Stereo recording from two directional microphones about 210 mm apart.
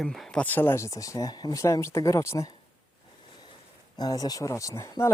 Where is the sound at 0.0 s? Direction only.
Centre (ahead or behind).